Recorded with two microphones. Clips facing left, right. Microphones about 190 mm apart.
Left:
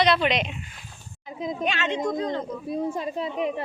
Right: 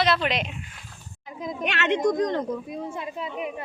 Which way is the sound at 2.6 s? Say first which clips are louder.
Left 5 dB; 35° left (ahead or behind).